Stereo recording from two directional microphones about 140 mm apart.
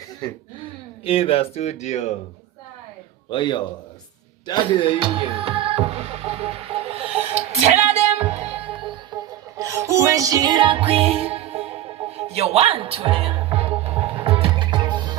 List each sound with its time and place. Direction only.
1.0 s speech: 45° left (ahead or behind)
3.2 s music: 35° left (ahead or behind)
4.9 s music: 40° right (ahead or behind)
9.6 s music: 20° right (ahead or behind)